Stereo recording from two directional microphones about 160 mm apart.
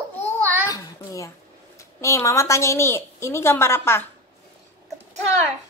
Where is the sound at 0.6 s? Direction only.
20° left (ahead or behind).